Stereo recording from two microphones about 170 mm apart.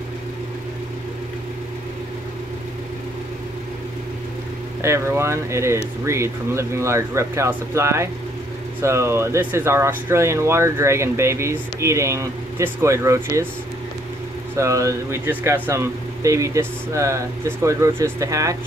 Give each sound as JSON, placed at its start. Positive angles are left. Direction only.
{"t": 4.8, "sound": "speech", "side_deg": -15}
{"t": 14.6, "sound": "speech", "side_deg": -20}